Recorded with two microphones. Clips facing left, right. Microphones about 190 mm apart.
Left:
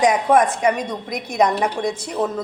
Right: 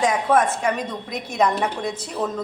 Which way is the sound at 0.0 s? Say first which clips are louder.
Left 3 dB; 15° left (ahead or behind).